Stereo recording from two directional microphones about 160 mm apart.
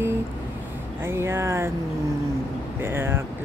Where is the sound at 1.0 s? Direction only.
15° right (ahead or behind).